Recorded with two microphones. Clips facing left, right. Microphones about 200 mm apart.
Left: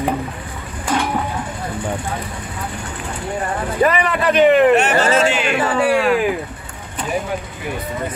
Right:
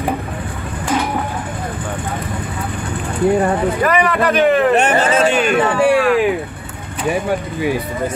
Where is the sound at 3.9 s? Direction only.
Centre (ahead or behind).